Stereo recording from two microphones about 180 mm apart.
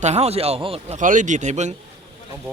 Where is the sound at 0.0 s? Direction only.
35° right (ahead or behind).